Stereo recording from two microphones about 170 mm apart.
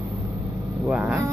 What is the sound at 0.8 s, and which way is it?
Vehicle, 10° right (ahead or behind).